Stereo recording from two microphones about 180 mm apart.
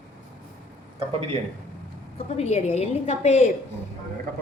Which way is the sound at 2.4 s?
35° left (ahead or behind).